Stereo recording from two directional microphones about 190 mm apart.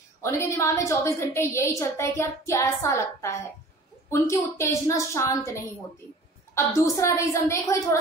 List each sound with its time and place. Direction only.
0.2 s a child's voice: 15° left (ahead or behind)